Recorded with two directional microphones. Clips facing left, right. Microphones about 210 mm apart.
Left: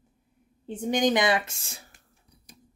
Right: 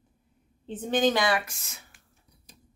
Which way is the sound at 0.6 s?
10° left (ahead or behind).